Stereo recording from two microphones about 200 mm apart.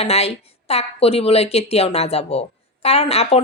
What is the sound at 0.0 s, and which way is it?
A woman's voice, 30° left (ahead or behind).